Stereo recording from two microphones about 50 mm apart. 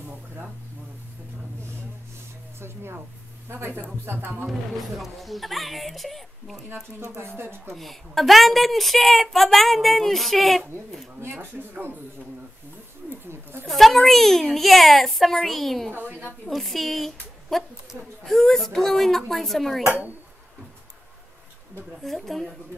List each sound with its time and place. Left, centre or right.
2.6 s speech: right
4.5 s a woman's voice: centre
7.2 s speech: right
7.7 s a woman's voice: centre
11.3 s a man's voice: right
13.3 s a sound: right
13.7 s a woman's voice: centre
22.0 s a woman's voice: centre